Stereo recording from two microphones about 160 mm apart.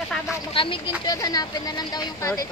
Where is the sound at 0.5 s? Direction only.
30° left (ahead or behind).